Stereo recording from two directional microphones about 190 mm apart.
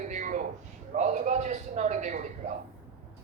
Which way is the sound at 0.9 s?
40° right (ahead or behind).